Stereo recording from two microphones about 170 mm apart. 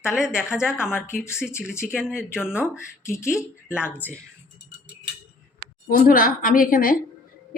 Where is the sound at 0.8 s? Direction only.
15° left (ahead or behind).